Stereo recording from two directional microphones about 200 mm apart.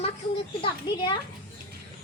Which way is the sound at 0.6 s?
25° left (ahead or behind).